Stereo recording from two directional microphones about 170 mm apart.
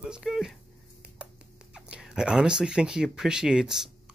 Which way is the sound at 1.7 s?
5° right (ahead or behind).